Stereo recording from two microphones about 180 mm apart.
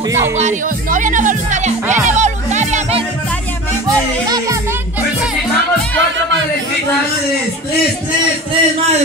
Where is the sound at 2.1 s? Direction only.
40° right (ahead or behind).